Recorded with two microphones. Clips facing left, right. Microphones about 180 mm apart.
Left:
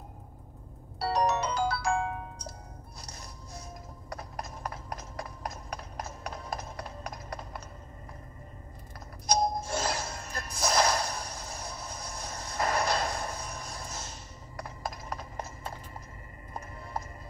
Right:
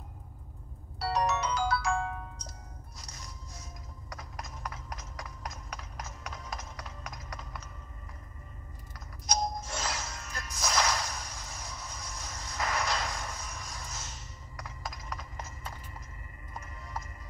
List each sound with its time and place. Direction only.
1.0 s music: 35° left (ahead or behind)
4.1 s clip-clop: 35° left (ahead or behind)
9.3 s music: 30° left (ahead or behind)
10.5 s whip: 35° left (ahead or behind)